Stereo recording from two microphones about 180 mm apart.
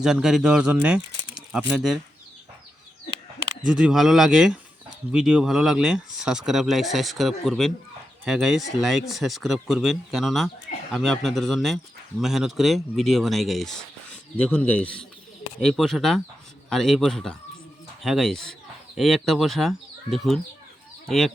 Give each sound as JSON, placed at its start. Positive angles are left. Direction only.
{"t": 0.0, "sound": "speech", "side_deg": -5}
{"t": 3.6, "sound": "speech", "side_deg": -5}